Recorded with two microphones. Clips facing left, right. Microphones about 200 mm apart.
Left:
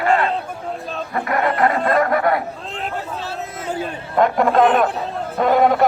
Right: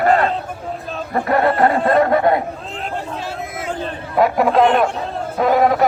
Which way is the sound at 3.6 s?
10° left (ahead or behind).